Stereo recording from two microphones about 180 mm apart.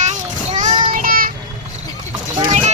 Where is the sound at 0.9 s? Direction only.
50° right (ahead or behind).